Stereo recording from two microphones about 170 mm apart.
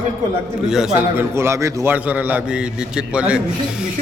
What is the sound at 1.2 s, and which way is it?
A man's voice, 15° right (ahead or behind).